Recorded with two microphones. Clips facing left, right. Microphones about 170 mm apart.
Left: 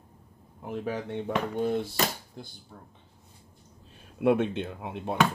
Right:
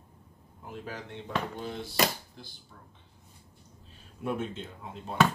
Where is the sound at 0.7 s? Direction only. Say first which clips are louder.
Left 8 dB; 60° left (ahead or behind).